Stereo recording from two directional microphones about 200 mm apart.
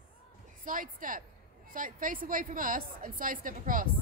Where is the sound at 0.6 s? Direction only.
40° right (ahead or behind).